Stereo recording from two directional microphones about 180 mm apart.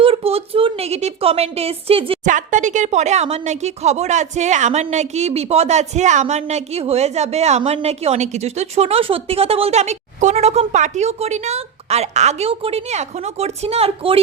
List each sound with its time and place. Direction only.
0.0 s speech: 30° right (ahead or behind)
2.2 s speech: 45° right (ahead or behind)